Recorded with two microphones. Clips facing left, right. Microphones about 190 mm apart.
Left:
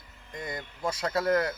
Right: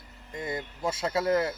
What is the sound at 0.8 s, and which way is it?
Speech, 5° right (ahead or behind).